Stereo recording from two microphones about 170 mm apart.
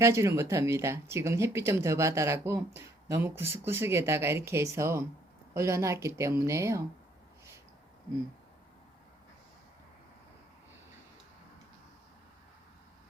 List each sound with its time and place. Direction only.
0.0 s speech: 15° right (ahead or behind)